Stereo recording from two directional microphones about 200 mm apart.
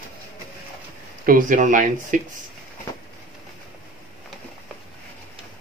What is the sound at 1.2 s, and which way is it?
Speech, 40° right (ahead or behind).